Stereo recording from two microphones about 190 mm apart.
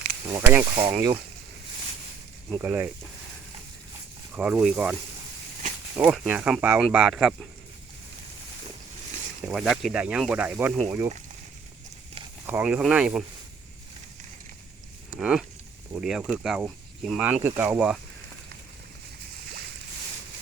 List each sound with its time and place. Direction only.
0.3 s speech: 15° right (ahead or behind)
2.6 s speech: 10° right (ahead or behind)
4.4 s speech: 5° right (ahead or behind)
6.0 s speech: 10° right (ahead or behind)
9.5 s speech: centre (ahead or behind)
12.5 s speech: 5° right (ahead or behind)
15.1 s speech: 5° right (ahead or behind)